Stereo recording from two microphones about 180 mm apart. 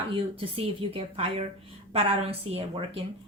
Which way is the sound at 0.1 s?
30° right (ahead or behind).